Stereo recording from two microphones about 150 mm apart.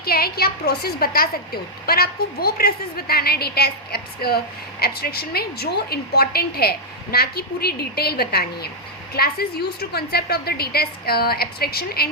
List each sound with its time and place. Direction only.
0.0 s a woman's voice: 90° left